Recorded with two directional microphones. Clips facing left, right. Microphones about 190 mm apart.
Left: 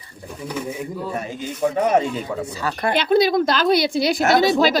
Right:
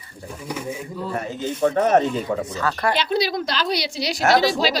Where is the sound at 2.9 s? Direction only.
55° left (ahead or behind).